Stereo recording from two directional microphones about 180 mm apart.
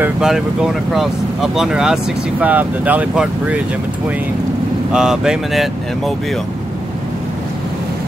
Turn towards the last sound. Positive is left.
turn(degrees=0)  # may be behind; listen again after turning